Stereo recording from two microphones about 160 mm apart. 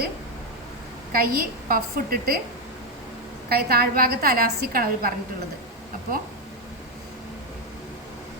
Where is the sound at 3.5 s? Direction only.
75° right (ahead or behind).